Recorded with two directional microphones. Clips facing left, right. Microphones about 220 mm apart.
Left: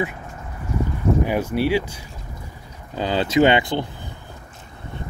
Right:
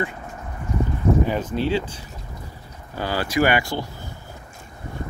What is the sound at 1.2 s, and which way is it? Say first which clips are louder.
Speech: left 2 dB; 10° left (ahead or behind).